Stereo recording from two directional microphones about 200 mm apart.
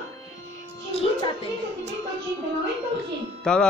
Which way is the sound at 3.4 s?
5° left (ahead or behind).